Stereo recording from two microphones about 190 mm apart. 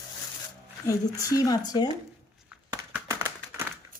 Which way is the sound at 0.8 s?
20° left (ahead or behind).